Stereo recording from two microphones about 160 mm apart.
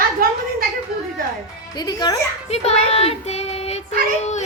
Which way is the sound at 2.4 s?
40° left (ahead or behind).